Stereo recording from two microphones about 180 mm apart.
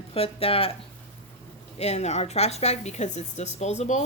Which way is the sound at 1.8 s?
35° left (ahead or behind).